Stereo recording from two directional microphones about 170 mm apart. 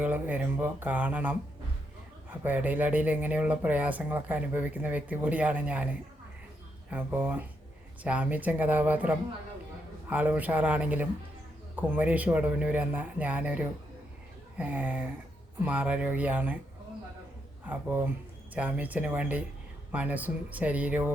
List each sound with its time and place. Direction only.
0.0 s speech: 10° right (ahead or behind)
2.4 s speech: 10° right (ahead or behind)
6.9 s speech: 10° right (ahead or behind)
17.7 s speech: 10° right (ahead or behind)